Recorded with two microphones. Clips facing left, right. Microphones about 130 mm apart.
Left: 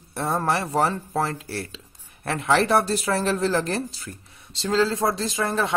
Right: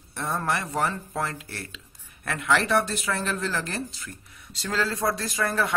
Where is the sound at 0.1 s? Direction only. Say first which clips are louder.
Left 4 dB; 35° left (ahead or behind).